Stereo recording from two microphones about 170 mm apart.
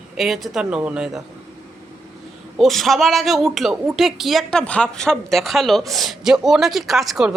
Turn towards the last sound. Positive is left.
turn(degrees=0)  # may be behind; listen again after turning